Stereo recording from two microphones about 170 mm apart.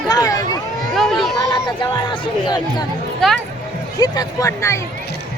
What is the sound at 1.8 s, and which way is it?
Speech, 25° left (ahead or behind).